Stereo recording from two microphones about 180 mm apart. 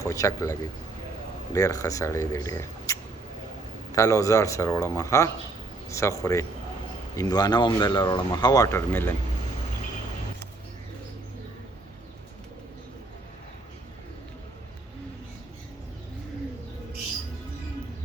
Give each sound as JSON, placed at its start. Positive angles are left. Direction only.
{"t": 0.0, "sound": "speech", "side_deg": 15}